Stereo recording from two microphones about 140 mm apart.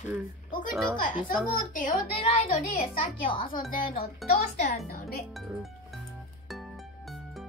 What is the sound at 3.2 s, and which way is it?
Speech, 40° left (ahead or behind).